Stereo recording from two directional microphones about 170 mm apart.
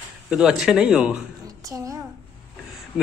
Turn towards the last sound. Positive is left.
turn(degrees=-5)  # may be behind; listen again after turning